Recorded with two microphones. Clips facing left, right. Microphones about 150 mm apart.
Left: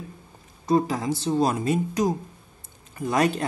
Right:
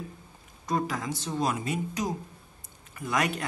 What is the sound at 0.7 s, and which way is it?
Speech, 30° left (ahead or behind).